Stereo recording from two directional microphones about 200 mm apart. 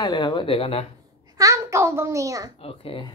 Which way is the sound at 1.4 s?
15° right (ahead or behind).